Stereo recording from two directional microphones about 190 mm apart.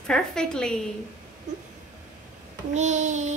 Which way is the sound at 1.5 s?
40° right (ahead or behind).